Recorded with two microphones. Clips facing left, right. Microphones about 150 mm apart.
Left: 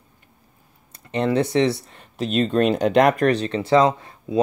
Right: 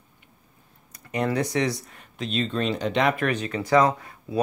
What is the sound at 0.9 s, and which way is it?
Speech, 25° left (ahead or behind).